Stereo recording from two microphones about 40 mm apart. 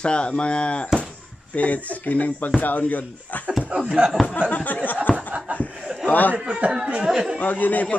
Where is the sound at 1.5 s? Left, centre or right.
Left.